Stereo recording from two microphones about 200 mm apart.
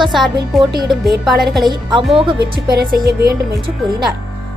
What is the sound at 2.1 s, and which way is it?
Speech, 25° right (ahead or behind).